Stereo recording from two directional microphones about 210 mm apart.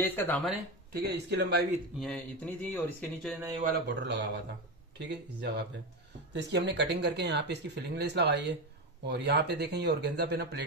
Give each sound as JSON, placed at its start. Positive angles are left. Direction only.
{"t": 0.0, "sound": "speech", "side_deg": 10}
{"t": 1.0, "sound": "speech", "side_deg": -50}
{"t": 2.0, "sound": "speech", "side_deg": 5}
{"t": 3.6, "sound": "speech", "side_deg": -50}